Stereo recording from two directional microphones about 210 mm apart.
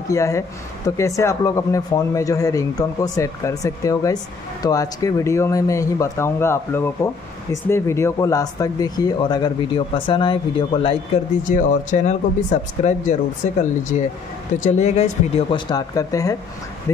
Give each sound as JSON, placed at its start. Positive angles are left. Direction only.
{"t": 0.1, "sound": "speech", "side_deg": 15}
{"t": 11.4, "sound": "speech", "side_deg": 35}